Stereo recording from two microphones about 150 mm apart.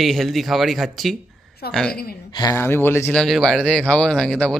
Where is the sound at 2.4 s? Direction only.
20° left (ahead or behind).